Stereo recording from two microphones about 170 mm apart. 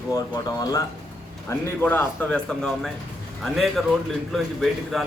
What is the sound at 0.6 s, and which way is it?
A man's voice, 20° left (ahead or behind).